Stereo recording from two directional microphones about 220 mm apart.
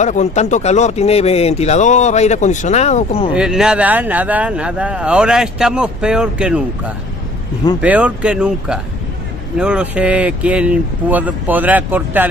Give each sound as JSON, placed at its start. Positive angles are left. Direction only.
{"t": 0.0, "sound": "speech", "side_deg": 30}
{"t": 3.3, "sound": "speech", "side_deg": -5}
{"t": 7.8, "sound": "speech", "side_deg": -5}